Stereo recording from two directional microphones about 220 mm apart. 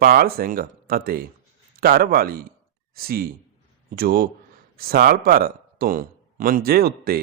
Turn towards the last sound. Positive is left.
turn(degrees=-45)  # may be behind; listen again after turning